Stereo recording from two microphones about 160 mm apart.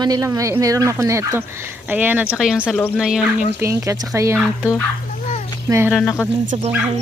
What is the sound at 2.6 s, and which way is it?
Speech, 10° left (ahead or behind).